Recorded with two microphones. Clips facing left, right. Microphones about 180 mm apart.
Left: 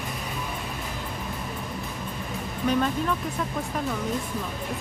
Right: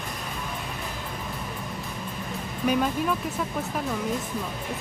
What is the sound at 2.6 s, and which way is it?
Speech, 10° right (ahead or behind).